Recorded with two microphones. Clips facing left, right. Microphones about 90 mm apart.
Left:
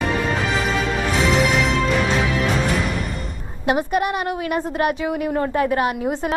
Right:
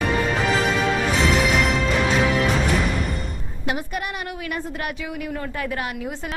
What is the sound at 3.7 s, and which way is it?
A woman's voice, 30° left (ahead or behind).